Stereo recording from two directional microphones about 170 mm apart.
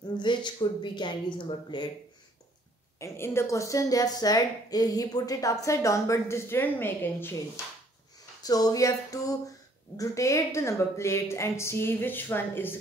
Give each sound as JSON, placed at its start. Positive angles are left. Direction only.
{"t": 0.2, "sound": "speech", "side_deg": 25}
{"t": 3.0, "sound": "a woman's voice", "side_deg": 15}